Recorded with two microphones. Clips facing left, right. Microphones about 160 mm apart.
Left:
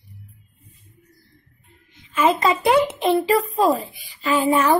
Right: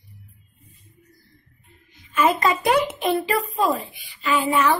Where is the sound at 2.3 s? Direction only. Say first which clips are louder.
Left 3 dB; 25° left (ahead or behind).